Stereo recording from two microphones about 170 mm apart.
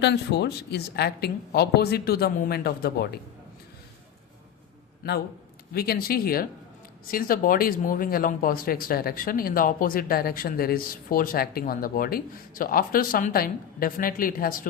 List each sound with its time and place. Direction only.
0.0 s a woman's voice: 90° left; by 3.2 s 70° left (ahead or behind)
5.7 s speech: 65° left (ahead or behind)